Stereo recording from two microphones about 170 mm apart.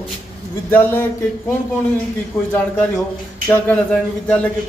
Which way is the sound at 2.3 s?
20° left (ahead or behind).